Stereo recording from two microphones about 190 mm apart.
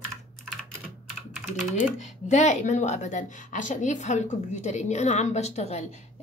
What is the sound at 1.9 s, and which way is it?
A woman's voice, 40° left (ahead or behind).